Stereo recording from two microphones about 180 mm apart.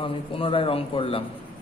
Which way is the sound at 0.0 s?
30° left (ahead or behind).